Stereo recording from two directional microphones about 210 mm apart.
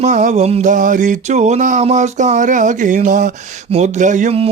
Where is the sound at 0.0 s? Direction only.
35° right (ahead or behind).